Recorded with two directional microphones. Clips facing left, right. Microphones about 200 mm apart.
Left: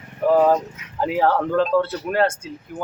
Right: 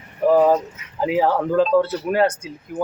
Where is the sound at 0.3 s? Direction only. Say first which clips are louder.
Even; 5° right (ahead or behind).